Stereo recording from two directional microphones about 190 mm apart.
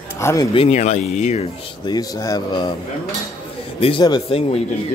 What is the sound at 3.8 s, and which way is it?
Speech, 25° left (ahead or behind).